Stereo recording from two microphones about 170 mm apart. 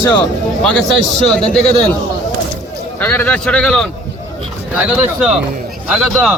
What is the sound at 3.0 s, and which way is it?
Speech, 10° left (ahead or behind).